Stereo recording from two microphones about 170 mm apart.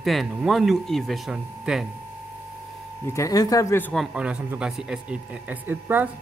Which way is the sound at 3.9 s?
5° right (ahead or behind).